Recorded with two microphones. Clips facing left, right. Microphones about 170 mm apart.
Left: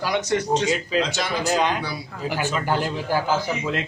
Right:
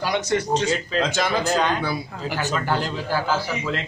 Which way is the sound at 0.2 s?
15° left (ahead or behind).